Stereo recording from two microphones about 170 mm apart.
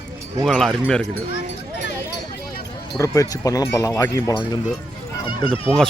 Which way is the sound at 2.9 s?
20° left (ahead or behind).